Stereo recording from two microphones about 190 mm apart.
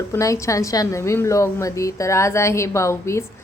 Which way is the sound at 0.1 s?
15° left (ahead or behind).